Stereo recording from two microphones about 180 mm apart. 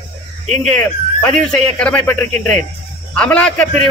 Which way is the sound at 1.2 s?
5° left (ahead or behind).